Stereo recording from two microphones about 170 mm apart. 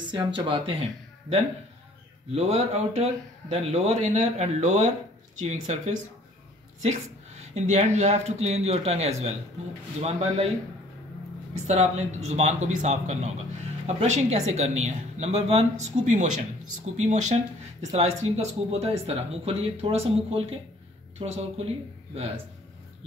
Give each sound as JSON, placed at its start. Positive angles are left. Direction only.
{"t": 0.0, "sound": "speech", "side_deg": -25}
{"t": 2.3, "sound": "a man's voice", "side_deg": -40}
{"t": 7.4, "sound": "speech", "side_deg": -40}
{"t": 11.5, "sound": "a man's voice", "side_deg": -40}